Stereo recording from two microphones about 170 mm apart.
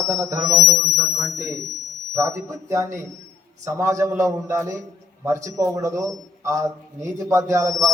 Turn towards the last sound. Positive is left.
turn(degrees=-20)  # may be behind; listen again after turning